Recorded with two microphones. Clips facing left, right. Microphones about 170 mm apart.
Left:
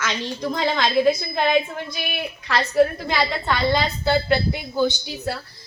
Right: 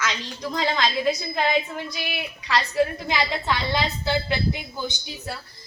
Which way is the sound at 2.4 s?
60° left (ahead or behind).